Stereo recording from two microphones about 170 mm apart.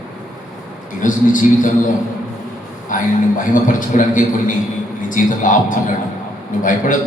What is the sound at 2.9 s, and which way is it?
A man's voice, 50° left (ahead or behind).